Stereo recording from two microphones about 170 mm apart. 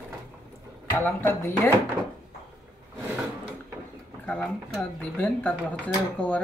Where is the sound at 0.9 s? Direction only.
10° left (ahead or behind).